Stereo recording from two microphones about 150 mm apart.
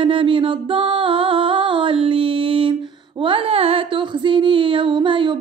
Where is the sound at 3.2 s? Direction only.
40° right (ahead or behind).